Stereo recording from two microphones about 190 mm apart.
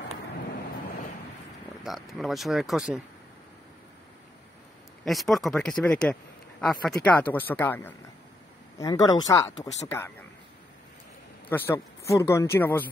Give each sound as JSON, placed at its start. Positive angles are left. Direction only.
{"t": 1.8, "sound": "speech", "side_deg": 0}
{"t": 5.0, "sound": "speech", "side_deg": 0}
{"t": 11.4, "sound": "speech", "side_deg": 10}